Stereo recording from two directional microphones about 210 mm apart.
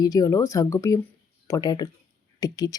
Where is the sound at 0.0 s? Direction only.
15° left (ahead or behind).